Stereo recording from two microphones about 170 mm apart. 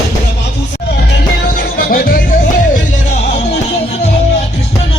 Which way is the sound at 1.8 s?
60° left (ahead or behind).